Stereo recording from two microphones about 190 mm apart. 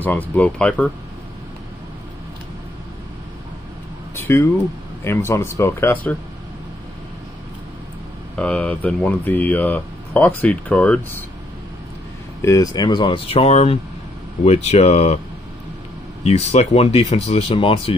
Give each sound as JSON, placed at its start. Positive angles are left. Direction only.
{"t": 0.0, "sound": "speech", "side_deg": 10}
{"t": 4.1, "sound": "a sound", "side_deg": 15}
{"t": 5.0, "sound": "speech", "side_deg": 15}
{"t": 8.4, "sound": "speech", "side_deg": 5}
{"t": 12.4, "sound": "speech", "side_deg": 15}
{"t": 16.3, "sound": "speech", "side_deg": 35}